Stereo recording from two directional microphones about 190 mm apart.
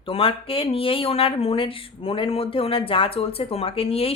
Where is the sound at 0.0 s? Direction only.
30° left (ahead or behind).